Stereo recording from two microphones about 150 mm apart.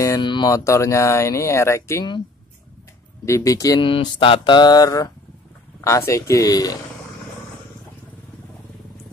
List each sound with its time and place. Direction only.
0.2 s speech: 30° left (ahead or behind)
3.3 s speech: 20° left (ahead or behind)
3.9 s mantra: 35° left (ahead or behind)
5.9 s speech: 20° left (ahead or behind)